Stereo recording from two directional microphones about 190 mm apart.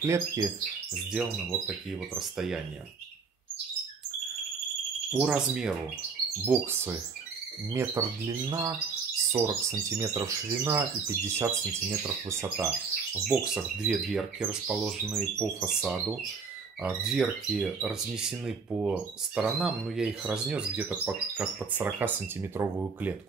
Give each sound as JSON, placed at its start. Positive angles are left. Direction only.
{"t": 0.0, "sound": "speech", "side_deg": -15}
{"t": 1.1, "sound": "speech", "side_deg": 0}
{"t": 5.1, "sound": "speech", "side_deg": -5}
{"t": 13.8, "sound": "speech", "side_deg": 0}